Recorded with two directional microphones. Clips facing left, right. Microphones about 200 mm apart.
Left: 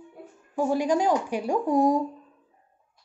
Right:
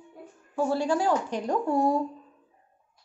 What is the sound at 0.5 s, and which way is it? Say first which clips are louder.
Speech: left 2 dB; 15° left (ahead or behind).